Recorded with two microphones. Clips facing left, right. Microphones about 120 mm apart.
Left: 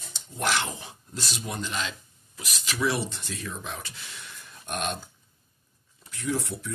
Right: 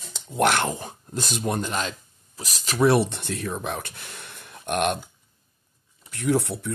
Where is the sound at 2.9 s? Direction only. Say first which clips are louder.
Right 11 dB; 60° right (ahead or behind).